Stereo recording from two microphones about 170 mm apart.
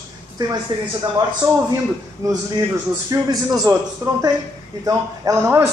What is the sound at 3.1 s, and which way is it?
A man's voice, 20° right (ahead or behind).